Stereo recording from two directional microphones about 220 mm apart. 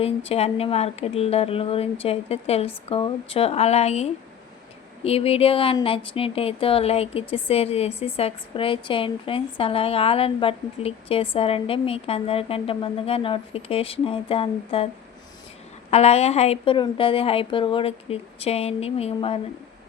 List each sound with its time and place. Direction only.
0.3 s speech: 30° left (ahead or behind)
15.9 s speech: 30° left (ahead or behind)